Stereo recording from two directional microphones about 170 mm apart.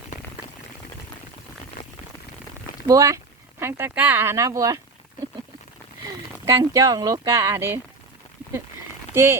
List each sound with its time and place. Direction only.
2.8 s speech: 20° right (ahead or behind)
6.1 s speech: 20° right (ahead or behind)
9.1 s speech: 15° right (ahead or behind)